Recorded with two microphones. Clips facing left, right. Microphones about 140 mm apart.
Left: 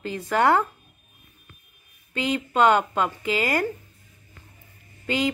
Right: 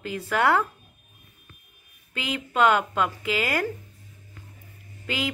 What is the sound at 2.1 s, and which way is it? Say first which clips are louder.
Speech: left 4 dB; 5° right (ahead or behind).